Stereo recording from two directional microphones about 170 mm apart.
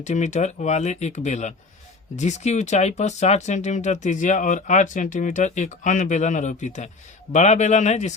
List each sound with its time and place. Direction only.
0.0 s speech: 45° left (ahead or behind)